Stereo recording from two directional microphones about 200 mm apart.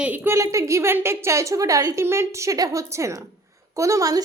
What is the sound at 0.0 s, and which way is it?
A woman's voice, 10° right (ahead or behind).